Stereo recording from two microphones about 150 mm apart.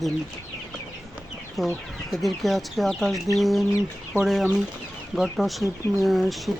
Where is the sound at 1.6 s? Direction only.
Centre (ahead or behind).